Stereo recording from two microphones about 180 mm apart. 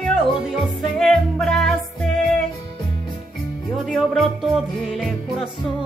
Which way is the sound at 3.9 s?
Centre (ahead or behind).